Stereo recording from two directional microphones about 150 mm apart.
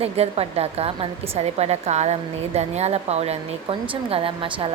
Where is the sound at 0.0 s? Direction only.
45° right (ahead or behind).